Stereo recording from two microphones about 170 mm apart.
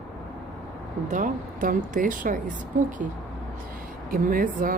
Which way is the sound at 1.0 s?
50° right (ahead or behind).